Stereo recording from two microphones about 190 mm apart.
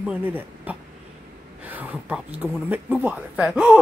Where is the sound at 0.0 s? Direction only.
10° right (ahead or behind).